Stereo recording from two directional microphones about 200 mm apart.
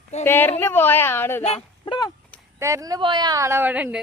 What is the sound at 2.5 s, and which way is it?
A woman's voice, 15° right (ahead or behind).